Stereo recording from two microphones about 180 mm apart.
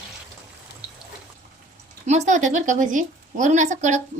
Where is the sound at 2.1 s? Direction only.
40° right (ahead or behind).